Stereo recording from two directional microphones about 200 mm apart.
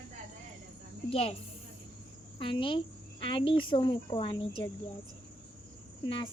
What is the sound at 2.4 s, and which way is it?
Speech, 25° left (ahead or behind).